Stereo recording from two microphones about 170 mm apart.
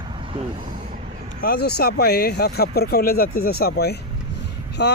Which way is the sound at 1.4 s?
65° left (ahead or behind).